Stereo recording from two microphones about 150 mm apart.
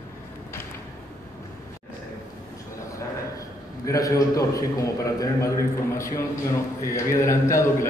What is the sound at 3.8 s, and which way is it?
A man's voice, 25° left (ahead or behind).